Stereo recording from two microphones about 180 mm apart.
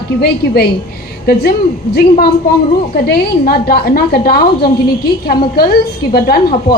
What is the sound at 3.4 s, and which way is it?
A woman's voice, 55° left (ahead or behind).